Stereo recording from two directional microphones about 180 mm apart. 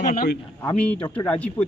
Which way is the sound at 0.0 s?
50° left (ahead or behind).